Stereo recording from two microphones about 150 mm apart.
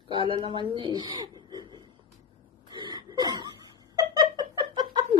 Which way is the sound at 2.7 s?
30° right (ahead or behind).